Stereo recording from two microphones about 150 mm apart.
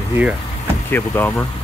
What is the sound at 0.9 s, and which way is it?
Speech, 15° left (ahead or behind).